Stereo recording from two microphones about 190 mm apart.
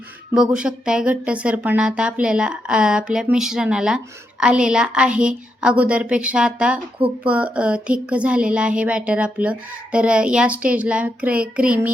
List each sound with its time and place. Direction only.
0.5 s speech: 5° right (ahead or behind)